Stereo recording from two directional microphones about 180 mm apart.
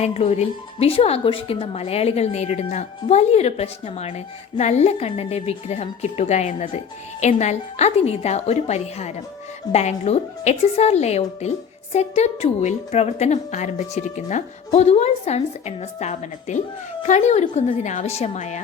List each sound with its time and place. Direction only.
0.0 s a woman's voice: 35° left (ahead or behind)